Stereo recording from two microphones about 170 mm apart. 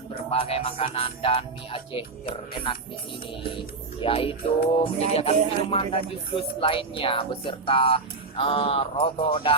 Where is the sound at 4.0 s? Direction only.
30° left (ahead or behind).